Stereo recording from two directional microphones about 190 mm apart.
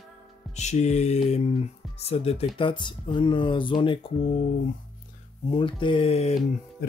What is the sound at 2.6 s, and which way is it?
Speech, 25° left (ahead or behind).